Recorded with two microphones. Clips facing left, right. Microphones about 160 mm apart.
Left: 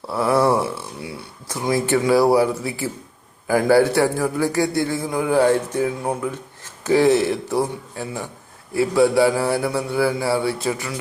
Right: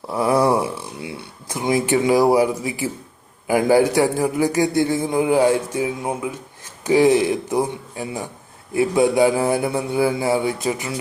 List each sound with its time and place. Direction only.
0.1 s a sound: 15° right (ahead or behind)
3.4 s a man's voice: 15° right (ahead or behind)
8.7 s mantra: 20° right (ahead or behind)